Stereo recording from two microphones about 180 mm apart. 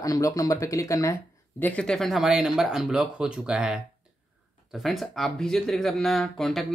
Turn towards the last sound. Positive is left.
turn(degrees=0)  # may be behind; listen again after turning